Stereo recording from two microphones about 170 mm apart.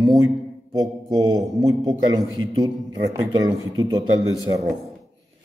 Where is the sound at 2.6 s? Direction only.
20° right (ahead or behind).